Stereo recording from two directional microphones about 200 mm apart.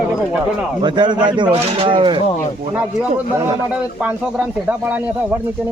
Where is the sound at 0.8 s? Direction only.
20° right (ahead or behind).